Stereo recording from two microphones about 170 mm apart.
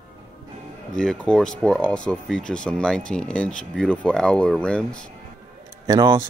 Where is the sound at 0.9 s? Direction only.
5° left (ahead or behind).